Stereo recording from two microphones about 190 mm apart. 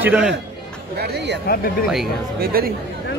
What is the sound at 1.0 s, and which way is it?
Speech, 60° right (ahead or behind).